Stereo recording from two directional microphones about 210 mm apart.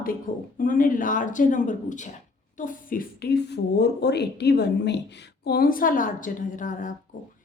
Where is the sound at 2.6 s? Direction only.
40° left (ahead or behind).